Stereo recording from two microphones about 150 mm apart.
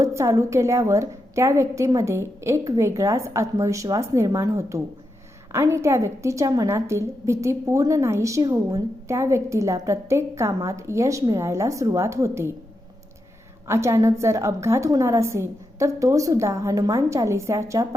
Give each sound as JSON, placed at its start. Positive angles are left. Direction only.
{"t": 0.0, "sound": "a woman's voice", "side_deg": -20}
{"t": 13.7, "sound": "a woman's voice", "side_deg": -20}